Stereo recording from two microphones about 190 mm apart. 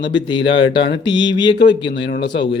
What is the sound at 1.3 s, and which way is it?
Speech, 25° left (ahead or behind).